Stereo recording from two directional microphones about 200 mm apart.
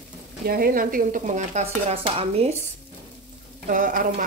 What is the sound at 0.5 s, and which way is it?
Frying, 45° right (ahead or behind).